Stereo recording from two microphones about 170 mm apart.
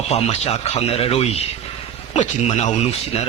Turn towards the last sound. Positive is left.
turn(degrees=40)  # may be behind; listen again after turning